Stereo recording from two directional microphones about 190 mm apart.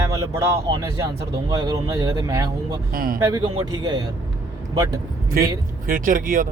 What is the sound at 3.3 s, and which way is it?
Speech, 20° right (ahead or behind).